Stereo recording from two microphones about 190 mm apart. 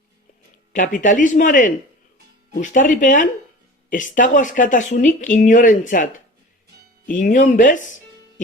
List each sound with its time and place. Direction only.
0.7 s speech: 45° left (ahead or behind)